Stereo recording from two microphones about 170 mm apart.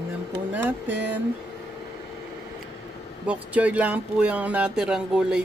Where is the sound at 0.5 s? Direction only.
10° right (ahead or behind).